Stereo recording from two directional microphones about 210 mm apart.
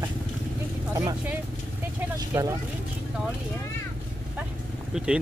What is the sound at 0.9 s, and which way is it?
Speech, 10° right (ahead or behind).